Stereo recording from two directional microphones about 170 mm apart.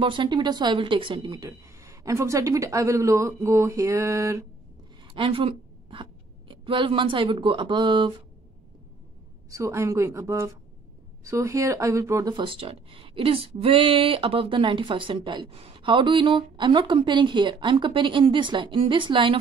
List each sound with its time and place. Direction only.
0.0 s speech: 30° right (ahead or behind)
5.0 s a sound: 30° right (ahead or behind)
6.5 s speech: 30° right (ahead or behind)
9.5 s a woman's voice: 15° right (ahead or behind)